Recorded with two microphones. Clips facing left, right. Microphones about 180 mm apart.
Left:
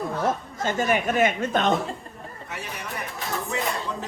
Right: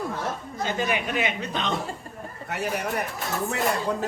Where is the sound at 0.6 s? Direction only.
45° left (ahead or behind).